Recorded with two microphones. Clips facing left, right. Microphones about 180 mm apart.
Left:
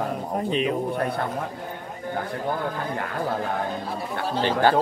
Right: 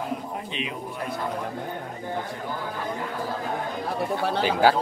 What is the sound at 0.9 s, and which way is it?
Speech, 60° left (ahead or behind).